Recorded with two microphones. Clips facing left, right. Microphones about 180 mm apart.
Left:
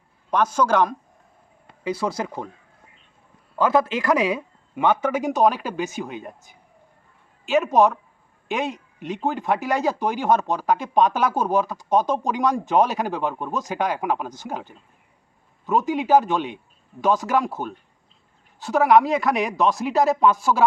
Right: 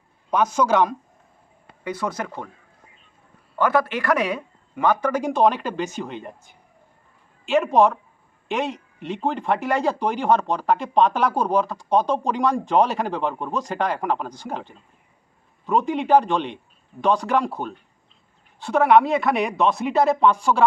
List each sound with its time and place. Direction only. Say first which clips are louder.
0.5 s speech: right 1 dB; 10° right (ahead or behind)
2.0 s speech: even; 10° left (ahead or behind)
3.6 s a man's voice: left 1 dB; 20° left (ahead or behind)
5.1 s speech: even; 5° left (ahead or behind)